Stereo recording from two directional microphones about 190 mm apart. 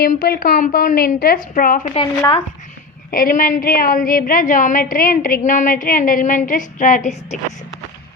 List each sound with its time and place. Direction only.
0.0 s a woman's voice: 50° left (ahead or behind)
1.9 s speech: 30° left (ahead or behind)
3.1 s a woman's voice: 50° left (ahead or behind)